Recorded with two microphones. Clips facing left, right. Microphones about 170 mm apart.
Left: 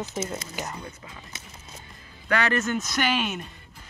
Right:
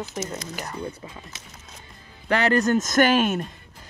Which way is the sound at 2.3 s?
30° right (ahead or behind).